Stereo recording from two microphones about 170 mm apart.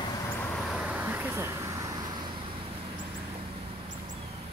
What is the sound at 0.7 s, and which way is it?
Vehicle, 10° right (ahead or behind).